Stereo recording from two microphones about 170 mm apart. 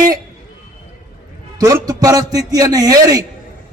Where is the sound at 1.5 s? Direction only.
20° right (ahead or behind).